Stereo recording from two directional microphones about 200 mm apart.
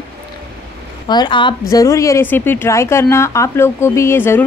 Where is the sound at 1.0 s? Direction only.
20° left (ahead or behind).